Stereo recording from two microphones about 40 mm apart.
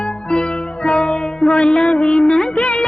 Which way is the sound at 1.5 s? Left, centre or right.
Left.